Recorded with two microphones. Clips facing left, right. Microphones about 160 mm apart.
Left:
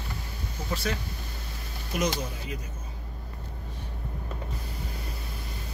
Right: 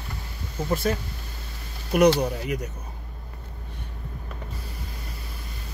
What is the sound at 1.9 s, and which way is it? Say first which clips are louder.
Speech: right 11 dB; 65° right (ahead or behind).